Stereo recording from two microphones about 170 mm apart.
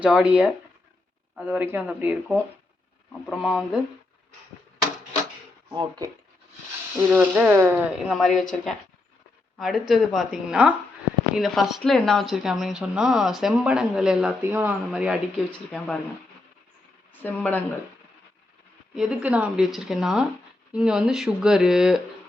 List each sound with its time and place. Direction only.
0.0 s speech: 5° right (ahead or behind)
5.7 s speech: 25° right (ahead or behind)
6.9 s speech: 10° right (ahead or behind)
7.9 s speech: centre (ahead or behind)
15.4 s speech: 5° left (ahead or behind)
17.2 s speech: 10° left (ahead or behind)
18.9 s speech: 5° right (ahead or behind)